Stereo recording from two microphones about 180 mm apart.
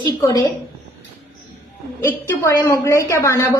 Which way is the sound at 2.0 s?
15° left (ahead or behind).